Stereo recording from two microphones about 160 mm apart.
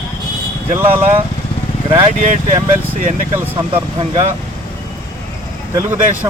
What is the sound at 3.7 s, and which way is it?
Speech, 25° right (ahead or behind).